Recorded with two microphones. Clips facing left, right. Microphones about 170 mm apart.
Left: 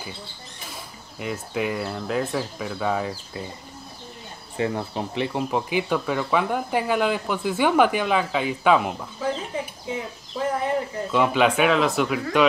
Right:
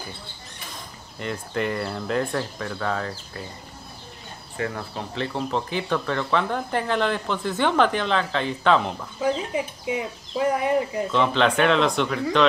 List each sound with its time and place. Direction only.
1.2 s speech: 5° left (ahead or behind)
4.6 s speech: 20° left (ahead or behind)
9.5 s speech: 15° right (ahead or behind)
11.1 s speech: 10° left (ahead or behind)